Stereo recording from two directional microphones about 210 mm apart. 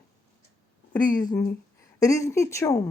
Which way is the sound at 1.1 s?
20° left (ahead or behind).